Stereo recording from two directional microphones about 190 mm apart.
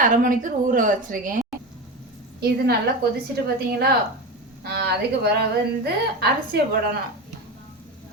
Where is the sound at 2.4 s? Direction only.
55° right (ahead or behind).